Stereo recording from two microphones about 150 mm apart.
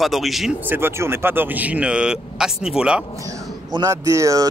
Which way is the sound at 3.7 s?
20° right (ahead or behind).